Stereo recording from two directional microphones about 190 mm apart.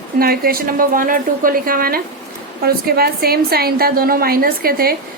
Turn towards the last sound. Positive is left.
turn(degrees=-50)  # may be behind; listen again after turning